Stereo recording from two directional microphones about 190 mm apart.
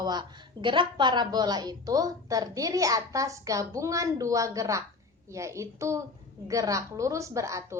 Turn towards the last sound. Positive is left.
turn(degrees=-15)  # may be behind; listen again after turning